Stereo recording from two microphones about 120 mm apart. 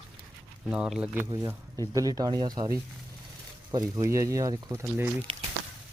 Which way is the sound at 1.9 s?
30° right (ahead or behind).